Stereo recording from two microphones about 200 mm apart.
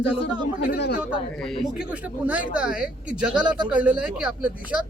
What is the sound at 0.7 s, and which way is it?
Speech, 55° left (ahead or behind).